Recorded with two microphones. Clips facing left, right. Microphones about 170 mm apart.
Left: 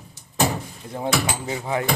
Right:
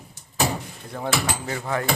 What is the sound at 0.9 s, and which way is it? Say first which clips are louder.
Speech: left 2 dB; 20° left (ahead or behind).